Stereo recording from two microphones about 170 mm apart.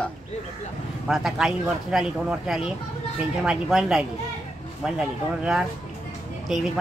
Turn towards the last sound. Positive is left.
turn(degrees=-5)  # may be behind; listen again after turning